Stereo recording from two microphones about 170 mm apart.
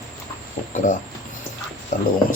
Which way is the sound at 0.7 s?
50° left (ahead or behind).